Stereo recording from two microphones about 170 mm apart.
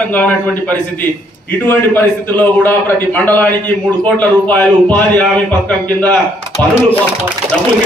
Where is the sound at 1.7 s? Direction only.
10° left (ahead or behind).